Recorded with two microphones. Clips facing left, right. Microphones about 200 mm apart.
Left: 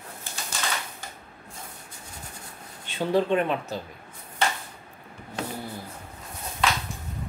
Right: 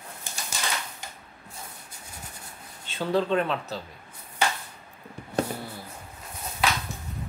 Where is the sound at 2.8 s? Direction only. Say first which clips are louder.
Left 2 dB; 15° left (ahead or behind).